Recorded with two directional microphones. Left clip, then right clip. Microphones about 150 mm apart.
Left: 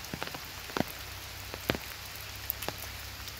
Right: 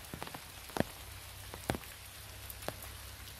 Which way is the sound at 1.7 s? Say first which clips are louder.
Left 6 dB; 55° right (ahead or behind).